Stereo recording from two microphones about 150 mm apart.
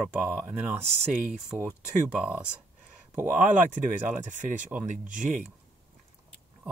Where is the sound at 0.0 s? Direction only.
10° right (ahead or behind).